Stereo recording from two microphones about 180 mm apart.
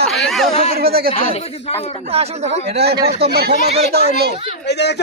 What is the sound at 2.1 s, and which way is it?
Speech, 35° right (ahead or behind).